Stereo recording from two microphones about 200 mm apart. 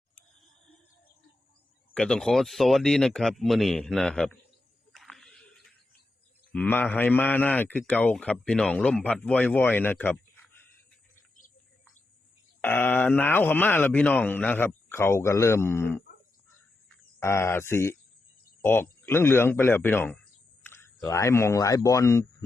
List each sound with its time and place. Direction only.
1.9 s speech: 5° left (ahead or behind)
4.9 s a sound: centre (ahead or behind)
6.5 s a man's voice: 5° left (ahead or behind)
12.6 s a man's voice: 10° left (ahead or behind)
17.2 s a man's voice: 15° left (ahead or behind)